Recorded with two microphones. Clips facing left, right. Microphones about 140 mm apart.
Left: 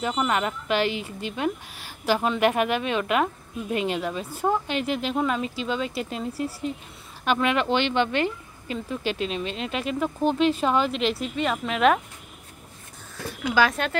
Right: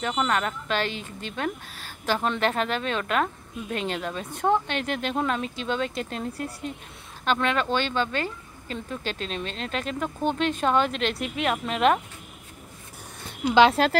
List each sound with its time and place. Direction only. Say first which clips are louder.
0.0 s a woman's voice: left 1 dB; 10° left (ahead or behind)
13.3 s speech: right 4 dB; 25° right (ahead or behind)